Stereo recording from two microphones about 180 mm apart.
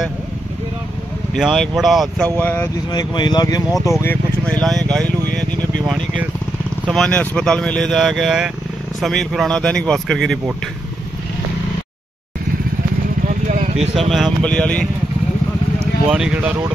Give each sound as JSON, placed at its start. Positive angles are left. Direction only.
{"t": 1.3, "sound": "speech", "side_deg": 0}
{"t": 2.3, "sound": "speech", "side_deg": 15}
{"t": 2.9, "sound": "speech", "side_deg": 25}
{"t": 6.9, "sound": "speech", "side_deg": 5}
{"t": 13.5, "sound": "vehicle", "side_deg": -40}
{"t": 14.1, "sound": "speech", "side_deg": 5}
{"t": 16.1, "sound": "speech", "side_deg": -5}